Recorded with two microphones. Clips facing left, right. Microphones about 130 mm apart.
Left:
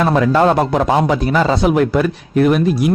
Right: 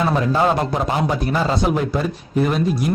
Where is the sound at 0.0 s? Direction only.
80° left.